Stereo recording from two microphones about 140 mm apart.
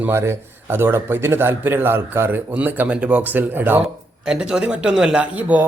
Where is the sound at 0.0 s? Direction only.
15° right (ahead or behind).